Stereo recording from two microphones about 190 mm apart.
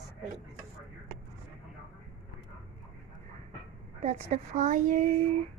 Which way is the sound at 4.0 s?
35° right (ahead or behind).